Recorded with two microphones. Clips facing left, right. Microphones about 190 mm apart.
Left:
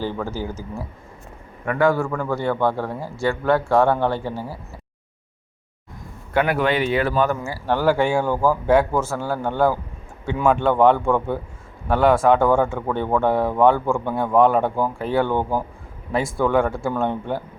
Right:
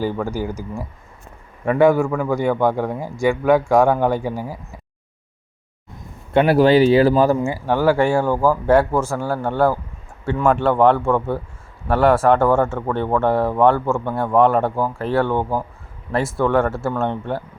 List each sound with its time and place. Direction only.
0.0 s a man's voice: 10° right (ahead or behind)
6.3 s speech: 30° right (ahead or behind)
7.4 s a man's voice: 15° right (ahead or behind)